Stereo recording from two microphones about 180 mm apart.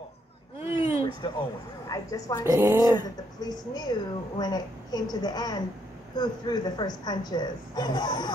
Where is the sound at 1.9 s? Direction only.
20° left (ahead or behind).